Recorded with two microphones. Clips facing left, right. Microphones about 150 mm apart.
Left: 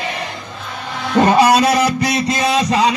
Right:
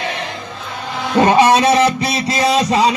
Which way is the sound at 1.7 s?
Centre (ahead or behind).